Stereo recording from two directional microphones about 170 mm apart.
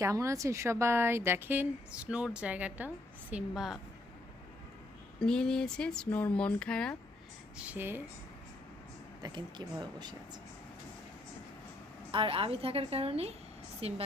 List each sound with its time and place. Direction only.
0.0 s a woman's voice: 20° right (ahead or behind); by 3.8 s centre (ahead or behind)
5.2 s speech: 5° left (ahead or behind)
7.5 s a woman's voice: 10° right (ahead or behind)
9.2 s speech: 25° right (ahead or behind)
12.1 s a woman's voice: 30° right (ahead or behind)